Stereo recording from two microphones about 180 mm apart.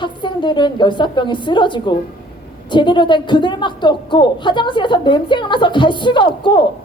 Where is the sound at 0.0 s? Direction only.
25° left (ahead or behind).